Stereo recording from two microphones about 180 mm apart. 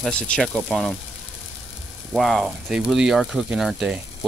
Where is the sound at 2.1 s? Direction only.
Centre (ahead or behind).